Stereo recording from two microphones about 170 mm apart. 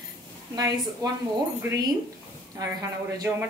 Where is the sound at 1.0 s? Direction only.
20° right (ahead or behind).